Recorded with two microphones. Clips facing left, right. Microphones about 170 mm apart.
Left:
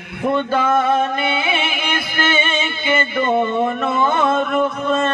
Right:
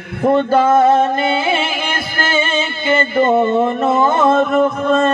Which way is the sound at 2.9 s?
45° right (ahead or behind).